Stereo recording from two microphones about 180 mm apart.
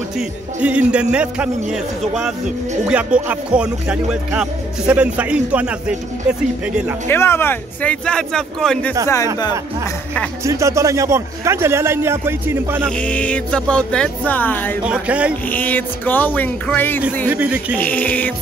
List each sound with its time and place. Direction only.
0.6 s music: 5° right (ahead or behind)
1.1 s speech: 5° right (ahead or behind)
2.9 s music: 5° right (ahead or behind)
7.1 s speech: 15° left (ahead or behind)
9.1 s speech: 20° left (ahead or behind)
10.4 s music: 15° right (ahead or behind)
12.9 s speech: 5° left (ahead or behind)
14.8 s music: 5° right (ahead or behind)
15.5 s speech: 10° left (ahead or behind)
17.3 s music: 10° right (ahead or behind)
17.7 s speech: 10° left (ahead or behind)